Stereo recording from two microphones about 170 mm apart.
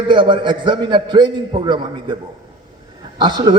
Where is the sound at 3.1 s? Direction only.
25° right (ahead or behind).